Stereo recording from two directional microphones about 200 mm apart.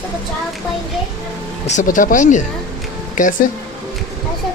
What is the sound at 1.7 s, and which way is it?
Speech, 40° left (ahead or behind).